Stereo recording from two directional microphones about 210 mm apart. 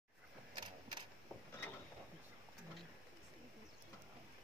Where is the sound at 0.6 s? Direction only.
20° right (ahead or behind).